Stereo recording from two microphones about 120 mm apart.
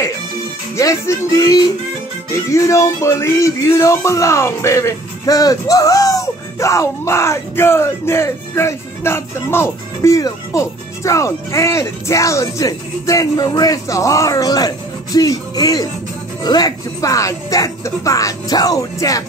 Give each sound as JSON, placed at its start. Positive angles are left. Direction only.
{"t": 0.7, "sound": "speech", "side_deg": 25}